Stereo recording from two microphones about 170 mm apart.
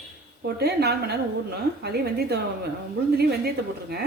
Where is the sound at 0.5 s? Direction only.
70° right (ahead or behind).